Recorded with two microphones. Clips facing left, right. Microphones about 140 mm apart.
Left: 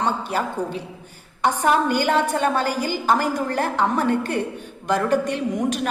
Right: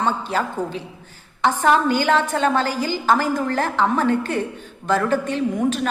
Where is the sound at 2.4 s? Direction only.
10° left (ahead or behind).